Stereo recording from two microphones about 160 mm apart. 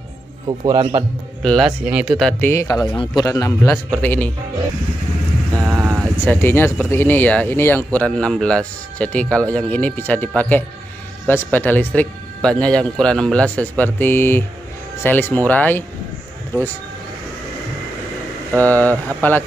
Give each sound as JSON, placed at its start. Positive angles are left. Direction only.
{"t": 0.5, "sound": "a man's voice", "side_deg": -30}
{"t": 1.4, "sound": "speech", "side_deg": 5}
{"t": 2.4, "sound": "speech", "side_deg": 20}
{"t": 3.7, "sound": "speech", "side_deg": 10}
{"t": 5.7, "sound": "vehicle", "side_deg": -20}
{"t": 6.2, "sound": "speech", "side_deg": 15}
{"t": 18.6, "sound": "speech", "side_deg": 10}